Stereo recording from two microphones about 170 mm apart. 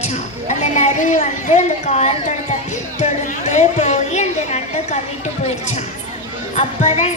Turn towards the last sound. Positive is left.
turn(degrees=40)  # may be behind; listen again after turning